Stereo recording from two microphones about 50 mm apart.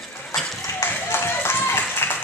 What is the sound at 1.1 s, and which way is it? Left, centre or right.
Clapping, left.